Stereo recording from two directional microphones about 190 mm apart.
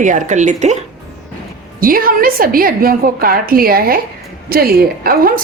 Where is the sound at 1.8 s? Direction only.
50° right (ahead or behind).